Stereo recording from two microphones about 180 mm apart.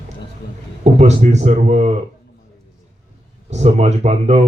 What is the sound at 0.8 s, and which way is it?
A man's voice, 40° right (ahead or behind).